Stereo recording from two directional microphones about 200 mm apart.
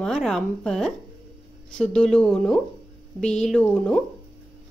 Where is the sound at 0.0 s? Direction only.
Centre (ahead or behind).